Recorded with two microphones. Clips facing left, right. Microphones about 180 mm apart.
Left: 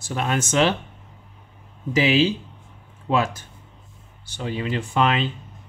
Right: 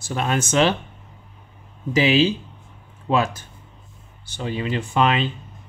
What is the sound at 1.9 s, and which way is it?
Speech, 30° right (ahead or behind).